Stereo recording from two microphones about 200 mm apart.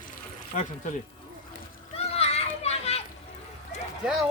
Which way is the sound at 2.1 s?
30° left (ahead or behind).